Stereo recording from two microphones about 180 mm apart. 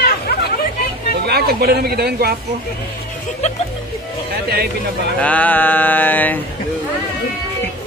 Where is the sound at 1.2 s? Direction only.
60° right (ahead or behind).